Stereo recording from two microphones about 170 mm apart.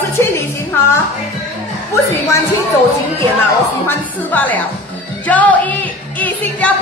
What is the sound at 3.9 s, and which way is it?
Speech, 10° left (ahead or behind).